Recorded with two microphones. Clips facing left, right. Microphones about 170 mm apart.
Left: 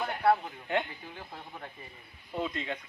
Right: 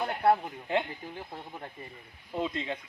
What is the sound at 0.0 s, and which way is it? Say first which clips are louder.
Speech: right 1 dB; 20° right (ahead or behind).